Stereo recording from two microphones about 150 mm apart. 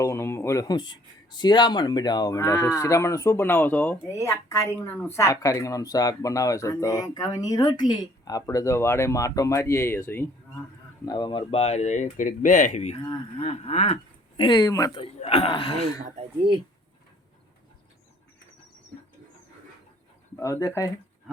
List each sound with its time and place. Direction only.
0.0 s speech: 20° left (ahead or behind)
11.0 s speech: 25° left (ahead or behind); by 13.0 s 50° left (ahead or behind)
13.0 s speech: 30° left (ahead or behind)
15.0 s speech: 40° left (ahead or behind)
20.4 s speech: 20° left (ahead or behind)